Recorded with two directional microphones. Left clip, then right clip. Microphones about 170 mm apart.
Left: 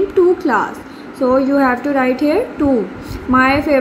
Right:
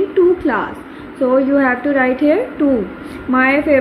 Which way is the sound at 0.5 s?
10° left (ahead or behind).